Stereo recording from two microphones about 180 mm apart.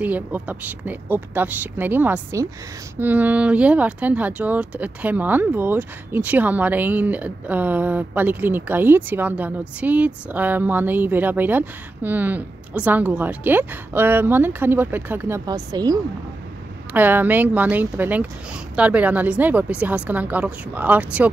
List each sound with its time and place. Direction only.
0.0 s speech: 10° right (ahead or behind)
16.9 s speech: 10° right (ahead or behind)